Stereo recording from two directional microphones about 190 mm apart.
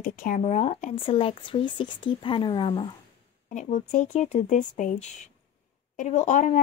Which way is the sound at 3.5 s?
40° left (ahead or behind).